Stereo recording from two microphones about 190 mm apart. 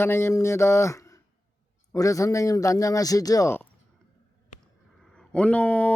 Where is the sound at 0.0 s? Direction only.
15° left (ahead or behind).